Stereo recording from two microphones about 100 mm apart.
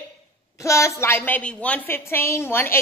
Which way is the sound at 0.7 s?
30° left (ahead or behind).